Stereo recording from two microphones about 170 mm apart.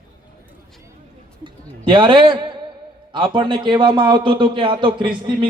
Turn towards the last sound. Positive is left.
turn(degrees=-30)  # may be behind; listen again after turning